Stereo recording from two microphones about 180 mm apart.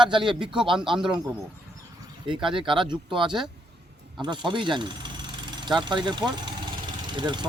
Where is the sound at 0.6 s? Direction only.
30° right (ahead or behind).